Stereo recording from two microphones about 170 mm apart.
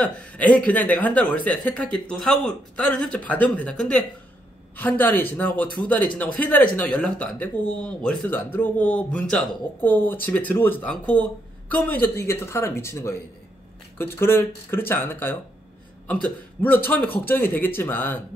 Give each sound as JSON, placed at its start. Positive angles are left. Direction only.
{"t": 0.0, "sound": "speech", "side_deg": 10}